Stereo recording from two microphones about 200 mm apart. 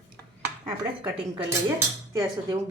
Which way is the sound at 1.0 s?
15° right (ahead or behind).